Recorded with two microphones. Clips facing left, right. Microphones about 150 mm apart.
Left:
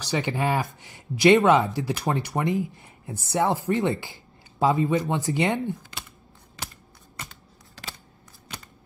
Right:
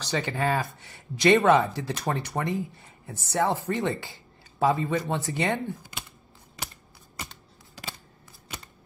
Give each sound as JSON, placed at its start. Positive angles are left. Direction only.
{"t": 0.0, "sound": "speech", "side_deg": 15}